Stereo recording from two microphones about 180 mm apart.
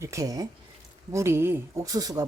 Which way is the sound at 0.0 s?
15° right (ahead or behind).